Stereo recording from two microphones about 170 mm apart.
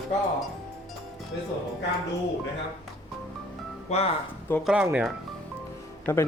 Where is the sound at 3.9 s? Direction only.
40° left (ahead or behind).